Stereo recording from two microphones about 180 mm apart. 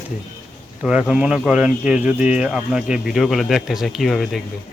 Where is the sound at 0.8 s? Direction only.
5° right (ahead or behind).